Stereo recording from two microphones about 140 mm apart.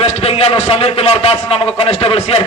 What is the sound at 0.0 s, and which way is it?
A man's voice, 45° left (ahead or behind).